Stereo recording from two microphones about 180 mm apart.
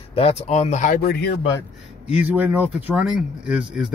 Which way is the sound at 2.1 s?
10° right (ahead or behind).